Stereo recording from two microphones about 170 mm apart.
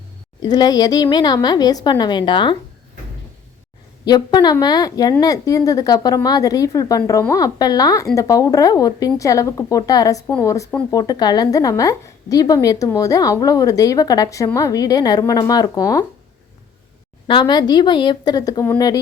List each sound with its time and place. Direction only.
0.4 s a woman's voice: 25° left (ahead or behind)
4.0 s a woman's voice: 25° left (ahead or behind)
17.2 s a woman's voice: 25° left (ahead or behind)